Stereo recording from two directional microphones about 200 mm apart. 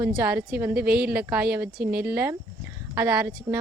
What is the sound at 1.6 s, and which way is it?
Speech, 55° right (ahead or behind).